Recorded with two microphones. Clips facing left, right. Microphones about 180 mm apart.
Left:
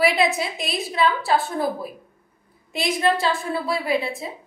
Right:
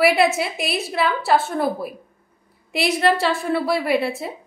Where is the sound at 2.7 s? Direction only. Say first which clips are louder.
Right 3 dB; 70° right (ahead or behind).